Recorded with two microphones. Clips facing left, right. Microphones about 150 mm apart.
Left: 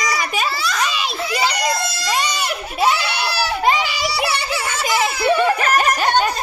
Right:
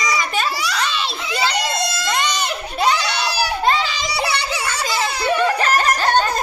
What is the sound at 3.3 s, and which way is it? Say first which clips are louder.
Baby cry: even; 15° right (ahead or behind).